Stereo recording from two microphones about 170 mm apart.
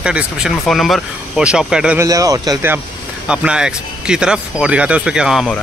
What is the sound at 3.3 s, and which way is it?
Speech, 5° right (ahead or behind).